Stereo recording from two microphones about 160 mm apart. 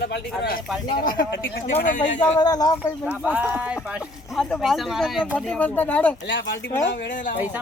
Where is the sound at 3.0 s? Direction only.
10° right (ahead or behind); by 6.1 s 10° left (ahead or behind).